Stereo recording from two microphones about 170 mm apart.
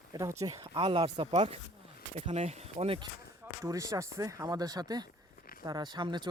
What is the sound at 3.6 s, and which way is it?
Speech, 20° right (ahead or behind).